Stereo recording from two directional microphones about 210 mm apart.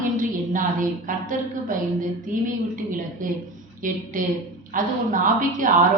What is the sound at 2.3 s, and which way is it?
A woman's voice, 40° right (ahead or behind).